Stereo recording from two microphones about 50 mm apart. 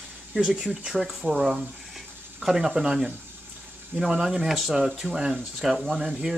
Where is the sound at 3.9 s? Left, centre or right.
Right.